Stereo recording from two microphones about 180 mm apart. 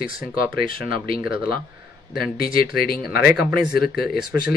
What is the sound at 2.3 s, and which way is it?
Speech, 55° left (ahead or behind).